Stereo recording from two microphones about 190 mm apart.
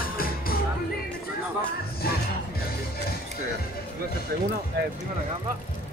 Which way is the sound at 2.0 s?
50° left (ahead or behind).